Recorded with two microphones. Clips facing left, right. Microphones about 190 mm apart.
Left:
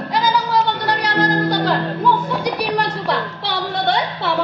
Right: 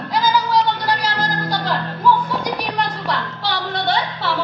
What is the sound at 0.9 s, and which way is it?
Music, 65° left (ahead or behind).